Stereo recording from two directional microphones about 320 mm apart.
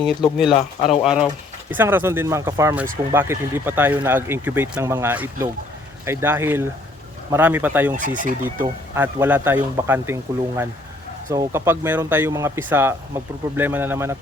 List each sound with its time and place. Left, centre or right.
0.0 s speech: centre
7.9 s speech: right
8.6 s speech: centre
11.3 s speech: centre